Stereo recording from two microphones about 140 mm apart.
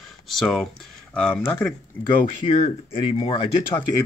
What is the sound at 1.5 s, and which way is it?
Speech, 15° left (ahead or behind).